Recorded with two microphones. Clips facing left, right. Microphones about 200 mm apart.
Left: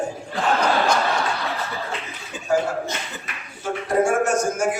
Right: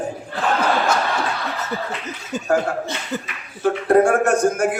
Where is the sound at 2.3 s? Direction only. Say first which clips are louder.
Right 10 dB; 40° right (ahead or behind).